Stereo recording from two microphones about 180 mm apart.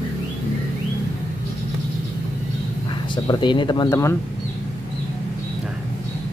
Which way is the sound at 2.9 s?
25° left (ahead or behind).